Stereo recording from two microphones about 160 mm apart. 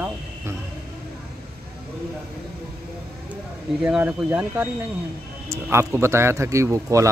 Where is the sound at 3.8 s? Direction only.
5° right (ahead or behind).